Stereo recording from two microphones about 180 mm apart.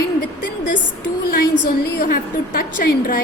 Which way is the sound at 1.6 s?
50° left (ahead or behind).